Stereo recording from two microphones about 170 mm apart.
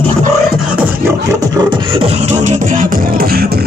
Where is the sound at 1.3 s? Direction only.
25° right (ahead or behind).